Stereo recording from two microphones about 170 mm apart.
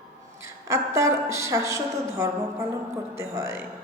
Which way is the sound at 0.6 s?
15° right (ahead or behind).